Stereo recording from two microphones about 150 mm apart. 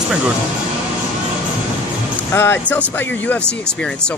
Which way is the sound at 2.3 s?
15° left (ahead or behind).